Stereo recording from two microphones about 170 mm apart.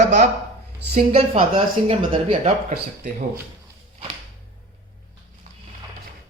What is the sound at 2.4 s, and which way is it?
Speech, 50° right (ahead or behind).